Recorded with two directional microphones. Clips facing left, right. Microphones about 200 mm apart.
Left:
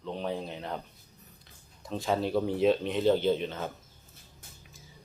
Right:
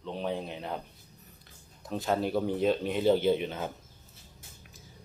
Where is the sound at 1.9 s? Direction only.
Centre (ahead or behind).